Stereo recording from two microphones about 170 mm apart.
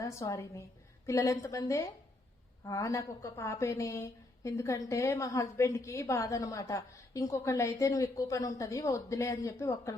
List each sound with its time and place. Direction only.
0.0 s a woman's voice: 15° left (ahead or behind)